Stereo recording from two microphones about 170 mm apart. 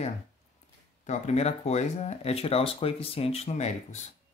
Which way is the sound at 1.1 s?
40° left (ahead or behind).